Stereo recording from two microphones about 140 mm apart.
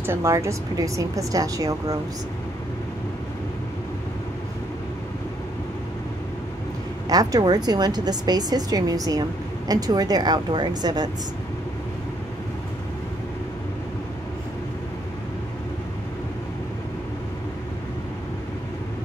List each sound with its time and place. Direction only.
0.0 s a woman's voice: 20° right (ahead or behind)
7.1 s a woman's voice: 25° right (ahead or behind)